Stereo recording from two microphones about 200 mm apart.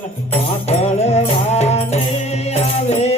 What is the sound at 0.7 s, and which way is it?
Music, 35° left (ahead or behind).